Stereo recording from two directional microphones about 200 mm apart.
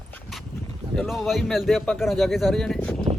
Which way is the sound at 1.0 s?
Centre (ahead or behind).